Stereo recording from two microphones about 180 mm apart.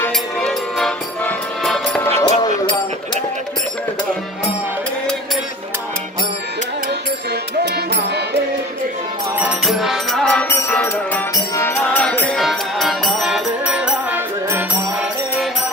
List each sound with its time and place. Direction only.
0.0 s music: 5° left (ahead or behind)
2.2 s music: 25° left (ahead or behind)
9.4 s music: centre (ahead or behind)